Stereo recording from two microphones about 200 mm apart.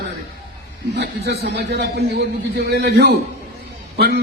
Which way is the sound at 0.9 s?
55° right (ahead or behind).